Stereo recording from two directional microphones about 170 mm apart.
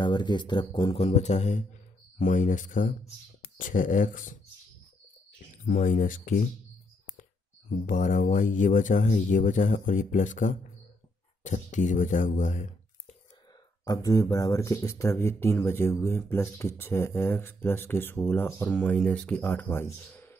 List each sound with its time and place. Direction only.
0.0 s speech: 25° left (ahead or behind); by 4.4 s 50° left (ahead or behind)
5.7 s speech: 55° left (ahead or behind)
7.8 s speech: 50° left (ahead or behind)
13.8 s speech: 20° left (ahead or behind)